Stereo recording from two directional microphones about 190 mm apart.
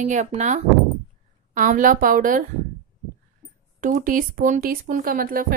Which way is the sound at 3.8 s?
45° right (ahead or behind).